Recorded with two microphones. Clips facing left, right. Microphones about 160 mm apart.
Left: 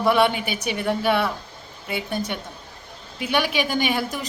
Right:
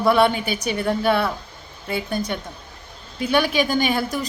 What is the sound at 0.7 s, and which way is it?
Speech, 15° left (ahead or behind).